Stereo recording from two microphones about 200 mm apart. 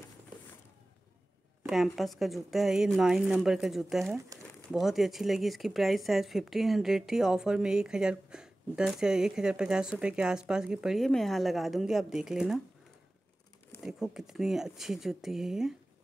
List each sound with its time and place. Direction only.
1.7 s speech: centre (ahead or behind)
13.8 s speech: centre (ahead or behind)